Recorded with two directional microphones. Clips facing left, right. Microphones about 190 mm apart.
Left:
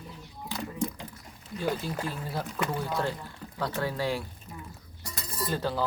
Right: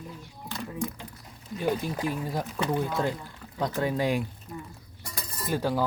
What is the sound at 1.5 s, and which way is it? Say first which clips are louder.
Speech: right 3 dB; 15° right (ahead or behind).